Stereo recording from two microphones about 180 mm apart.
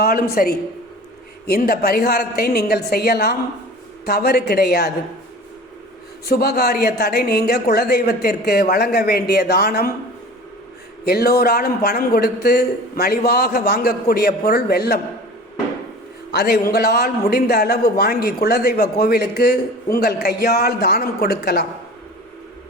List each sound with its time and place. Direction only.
0.0 s a man's voice: 55° left (ahead or behind)
6.2 s a man's voice: 60° left (ahead or behind)
11.0 s a man's voice: 60° left (ahead or behind)
16.3 s a man's voice: 65° left (ahead or behind)